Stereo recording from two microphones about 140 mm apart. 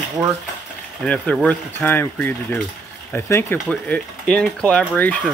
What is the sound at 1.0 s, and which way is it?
Speech, 5° left (ahead or behind).